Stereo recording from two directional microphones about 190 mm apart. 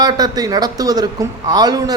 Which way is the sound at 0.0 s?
20° right (ahead or behind).